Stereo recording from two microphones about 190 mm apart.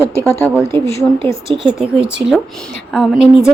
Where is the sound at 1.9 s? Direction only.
5° right (ahead or behind).